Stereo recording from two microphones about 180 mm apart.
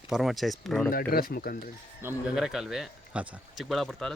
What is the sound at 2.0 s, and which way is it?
Speech, 10° right (ahead or behind).